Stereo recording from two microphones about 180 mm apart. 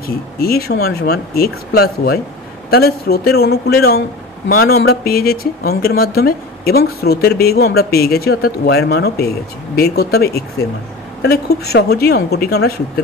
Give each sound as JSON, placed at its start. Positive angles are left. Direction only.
{"t": 0.4, "sound": "speech", "side_deg": 60}